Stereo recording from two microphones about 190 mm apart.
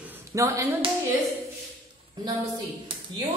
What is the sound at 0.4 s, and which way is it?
Speech, 15° right (ahead or behind).